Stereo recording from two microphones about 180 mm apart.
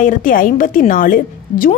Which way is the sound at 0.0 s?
50° left (ahead or behind).